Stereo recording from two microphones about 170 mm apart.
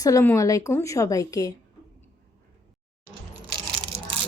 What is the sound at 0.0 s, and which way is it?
A woman's voice, 15° left (ahead or behind).